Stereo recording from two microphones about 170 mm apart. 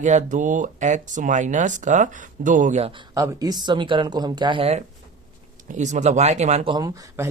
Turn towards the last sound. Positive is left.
turn(degrees=-20)  # may be behind; listen again after turning